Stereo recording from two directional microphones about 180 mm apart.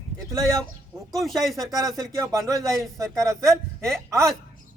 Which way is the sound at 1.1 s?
Centre (ahead or behind).